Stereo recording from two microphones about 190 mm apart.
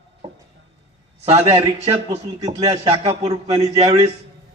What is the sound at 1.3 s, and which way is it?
Speech, 30° right (ahead or behind).